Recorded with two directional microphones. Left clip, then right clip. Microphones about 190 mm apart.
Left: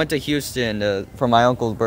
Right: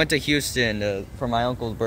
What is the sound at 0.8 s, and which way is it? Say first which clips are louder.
Speech: left 5 dB; 25° left (ahead or behind).